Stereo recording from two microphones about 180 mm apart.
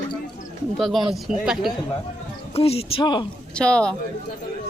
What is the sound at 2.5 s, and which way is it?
Speech, 35° left (ahead or behind).